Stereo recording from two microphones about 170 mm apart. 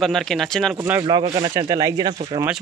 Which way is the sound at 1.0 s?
25° right (ahead or behind).